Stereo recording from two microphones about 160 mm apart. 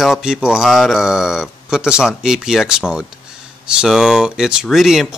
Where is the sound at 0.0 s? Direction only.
5° right (ahead or behind).